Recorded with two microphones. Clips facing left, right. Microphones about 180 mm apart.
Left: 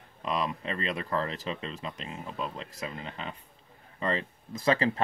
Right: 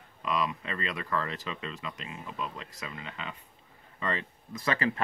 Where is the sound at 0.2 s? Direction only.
35° left (ahead or behind).